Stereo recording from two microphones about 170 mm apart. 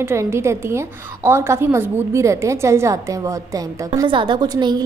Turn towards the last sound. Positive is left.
turn(degrees=-25)  # may be behind; listen again after turning